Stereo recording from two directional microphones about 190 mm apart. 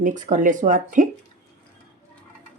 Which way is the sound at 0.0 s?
45° right (ahead or behind).